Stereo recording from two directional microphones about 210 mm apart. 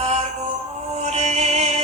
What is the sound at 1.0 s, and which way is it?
Music, 30° right (ahead or behind).